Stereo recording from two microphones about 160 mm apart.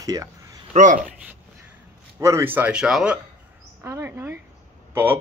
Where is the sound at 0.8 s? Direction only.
55° right (ahead or behind).